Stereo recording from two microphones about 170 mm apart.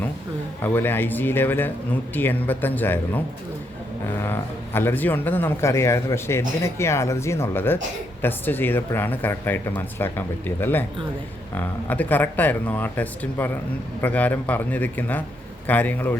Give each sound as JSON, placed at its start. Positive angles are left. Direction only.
{"t": 0.6, "sound": "speech", "side_deg": 10}